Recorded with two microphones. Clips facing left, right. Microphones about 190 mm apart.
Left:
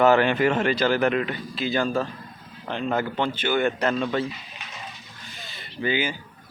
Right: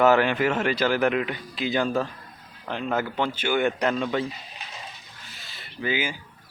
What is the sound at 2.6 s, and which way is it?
Speech, 5° right (ahead or behind).